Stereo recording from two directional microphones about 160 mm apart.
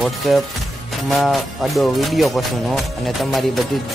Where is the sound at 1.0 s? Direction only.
Centre (ahead or behind).